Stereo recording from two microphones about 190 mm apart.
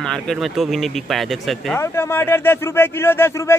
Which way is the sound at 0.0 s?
5° left (ahead or behind).